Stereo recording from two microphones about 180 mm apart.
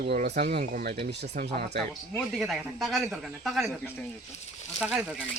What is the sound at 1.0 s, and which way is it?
Speech, 65° right (ahead or behind).